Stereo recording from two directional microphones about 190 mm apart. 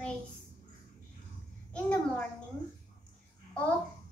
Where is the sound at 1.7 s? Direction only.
5° left (ahead or behind).